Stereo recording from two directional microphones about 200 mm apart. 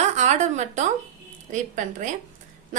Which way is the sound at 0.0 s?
35° right (ahead or behind).